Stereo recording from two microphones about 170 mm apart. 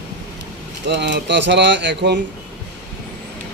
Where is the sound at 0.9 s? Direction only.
90° right.